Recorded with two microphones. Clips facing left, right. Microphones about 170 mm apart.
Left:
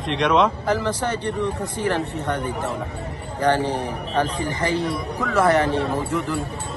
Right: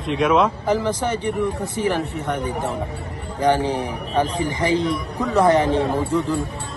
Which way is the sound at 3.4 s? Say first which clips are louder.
Right 2 dB; 10° right (ahead or behind).